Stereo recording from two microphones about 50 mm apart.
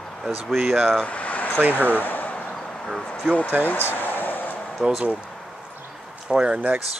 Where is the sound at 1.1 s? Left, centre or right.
Left.